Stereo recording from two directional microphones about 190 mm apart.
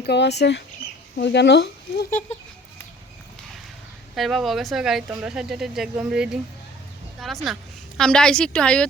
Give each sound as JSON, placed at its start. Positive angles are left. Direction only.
{"t": 0.0, "sound": "speech", "side_deg": 60}
{"t": 4.1, "sound": "speech", "side_deg": 0}
{"t": 7.4, "sound": "a woman's voice", "side_deg": 0}